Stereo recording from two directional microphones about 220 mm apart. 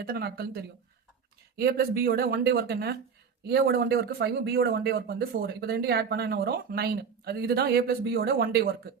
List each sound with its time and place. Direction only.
0.0 s speech: 45° right (ahead or behind)